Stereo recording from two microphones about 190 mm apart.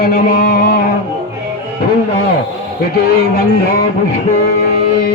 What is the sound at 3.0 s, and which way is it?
Speech, 50° left (ahead or behind).